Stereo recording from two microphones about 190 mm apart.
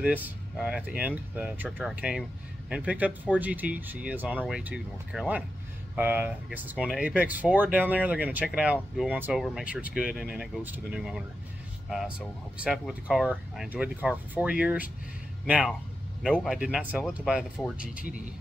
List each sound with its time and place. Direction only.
0.0 s speech: 10° right (ahead or behind)